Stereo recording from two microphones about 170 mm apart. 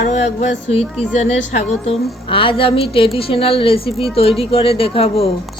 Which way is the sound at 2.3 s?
30° left (ahead or behind).